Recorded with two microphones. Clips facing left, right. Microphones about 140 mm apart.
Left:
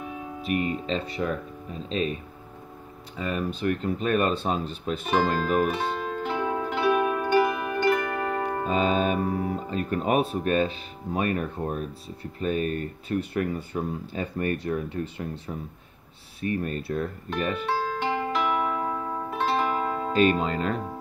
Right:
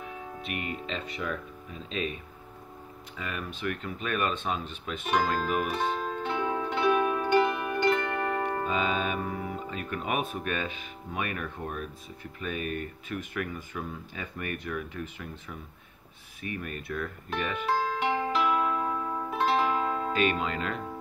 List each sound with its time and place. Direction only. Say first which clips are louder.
0.5 s speech: left 9 dB; 40° left (ahead or behind)
3.2 s speech: left 8 dB; 35° left (ahead or behind)
5.7 s zither: left 2 dB; 5° left (ahead or behind)
8.6 s speech: left 5 dB; 35° left (ahead or behind)
17.6 s music: left 1 dB; centre (ahead or behind)
20.1 s speech: left 10 dB; 40° left (ahead or behind)